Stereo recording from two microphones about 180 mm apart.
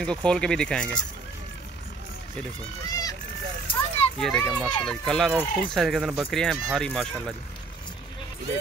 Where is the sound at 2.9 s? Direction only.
20° left (ahead or behind).